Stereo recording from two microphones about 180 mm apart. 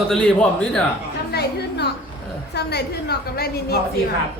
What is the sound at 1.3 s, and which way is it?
A woman's voice, 65° left (ahead or behind).